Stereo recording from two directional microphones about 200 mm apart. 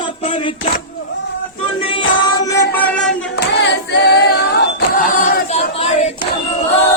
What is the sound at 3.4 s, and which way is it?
Singing, 60° left (ahead or behind).